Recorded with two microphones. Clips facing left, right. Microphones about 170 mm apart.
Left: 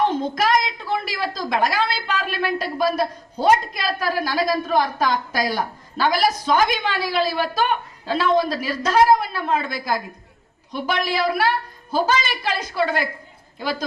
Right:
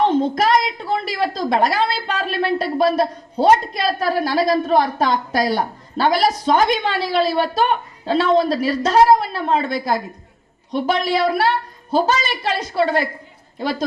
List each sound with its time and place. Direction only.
0.0 s a woman's voice: 30° right (ahead or behind)